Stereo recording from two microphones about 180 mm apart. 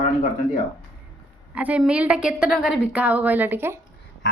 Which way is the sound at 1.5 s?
10° right (ahead or behind).